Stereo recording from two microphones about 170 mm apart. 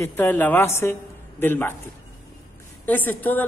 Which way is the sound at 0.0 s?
15° left (ahead or behind).